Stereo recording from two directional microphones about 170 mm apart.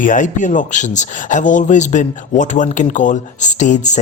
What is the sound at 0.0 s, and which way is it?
Speech, 50° left (ahead or behind).